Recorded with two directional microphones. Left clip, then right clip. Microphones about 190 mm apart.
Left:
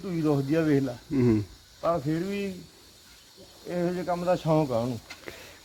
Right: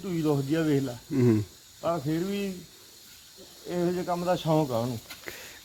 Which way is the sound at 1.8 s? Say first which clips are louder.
Left 2 dB; 20° left (ahead or behind).